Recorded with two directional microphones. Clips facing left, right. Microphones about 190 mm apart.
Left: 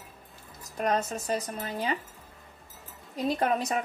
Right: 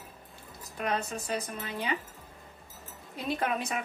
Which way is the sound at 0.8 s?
40° left (ahead or behind).